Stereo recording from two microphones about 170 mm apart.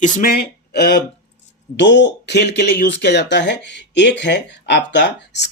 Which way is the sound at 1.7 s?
90° left.